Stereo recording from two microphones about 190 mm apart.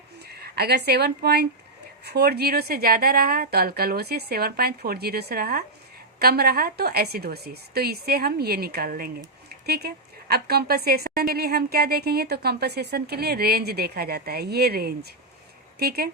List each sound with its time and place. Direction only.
0.3 s a woman's voice: 55° right (ahead or behind)